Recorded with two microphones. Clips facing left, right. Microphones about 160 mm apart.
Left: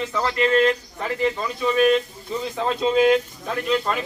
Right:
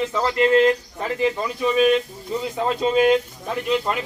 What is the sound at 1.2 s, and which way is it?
Speech, 10° right (ahead or behind).